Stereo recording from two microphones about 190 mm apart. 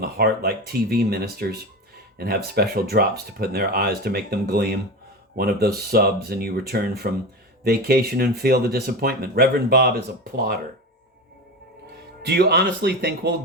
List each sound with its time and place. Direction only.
0.0 s speech: 55° right (ahead or behind)
12.2 s speech: 55° right (ahead or behind)